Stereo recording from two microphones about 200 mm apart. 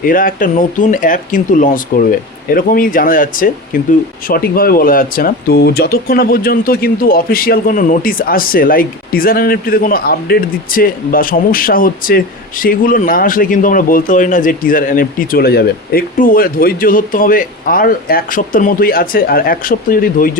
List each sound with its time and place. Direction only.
0.0 s speech: 45° left (ahead or behind)